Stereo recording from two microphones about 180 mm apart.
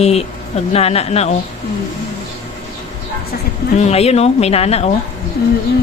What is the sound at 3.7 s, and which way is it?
A woman's voice, 35° left (ahead or behind).